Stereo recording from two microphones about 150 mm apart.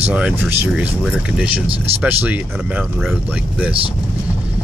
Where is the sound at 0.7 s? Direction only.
Centre (ahead or behind).